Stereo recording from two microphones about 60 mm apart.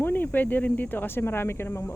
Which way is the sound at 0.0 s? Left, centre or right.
Left.